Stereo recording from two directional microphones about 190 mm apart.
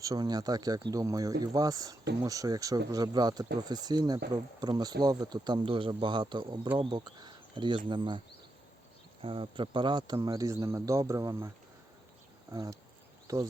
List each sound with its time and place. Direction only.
0.0 s speech: 20° right (ahead or behind)
9.2 s speech: 25° right (ahead or behind)